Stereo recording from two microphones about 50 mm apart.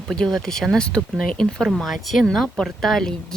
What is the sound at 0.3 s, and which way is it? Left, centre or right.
Speech, centre.